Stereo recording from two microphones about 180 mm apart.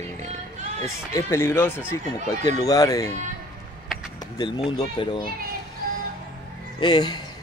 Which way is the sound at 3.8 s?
Centre (ahead or behind).